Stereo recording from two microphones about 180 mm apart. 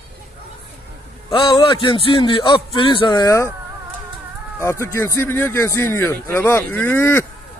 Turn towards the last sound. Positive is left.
turn(degrees=15)  # may be behind; listen again after turning